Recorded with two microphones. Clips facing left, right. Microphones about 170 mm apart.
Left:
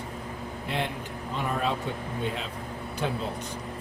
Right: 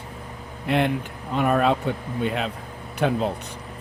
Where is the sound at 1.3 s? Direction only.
65° right (ahead or behind).